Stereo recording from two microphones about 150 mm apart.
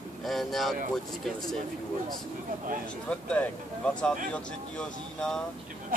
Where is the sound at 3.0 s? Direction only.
10° left (ahead or behind).